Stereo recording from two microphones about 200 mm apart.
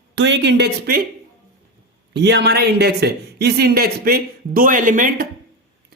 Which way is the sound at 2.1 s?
55° right (ahead or behind).